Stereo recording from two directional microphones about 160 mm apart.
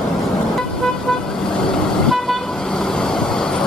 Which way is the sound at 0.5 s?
5° left (ahead or behind).